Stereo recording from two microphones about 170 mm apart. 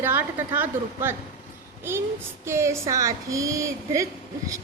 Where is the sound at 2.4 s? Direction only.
15° right (ahead or behind).